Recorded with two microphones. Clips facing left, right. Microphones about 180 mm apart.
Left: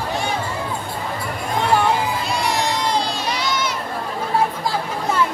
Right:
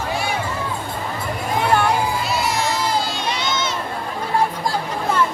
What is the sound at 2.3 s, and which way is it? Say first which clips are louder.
Crowd: even; 5° right (ahead or behind).